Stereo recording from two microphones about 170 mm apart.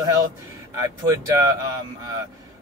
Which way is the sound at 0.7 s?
20° right (ahead or behind).